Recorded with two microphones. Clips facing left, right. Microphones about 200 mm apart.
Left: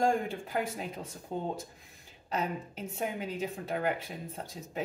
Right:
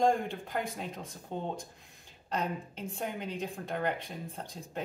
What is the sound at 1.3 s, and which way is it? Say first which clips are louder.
Speech: left 2 dB; 25° right (ahead or behind).